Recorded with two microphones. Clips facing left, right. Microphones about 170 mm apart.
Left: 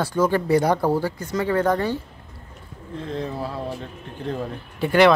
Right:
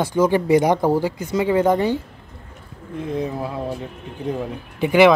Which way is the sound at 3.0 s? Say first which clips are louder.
Right 4 dB; 20° right (ahead or behind).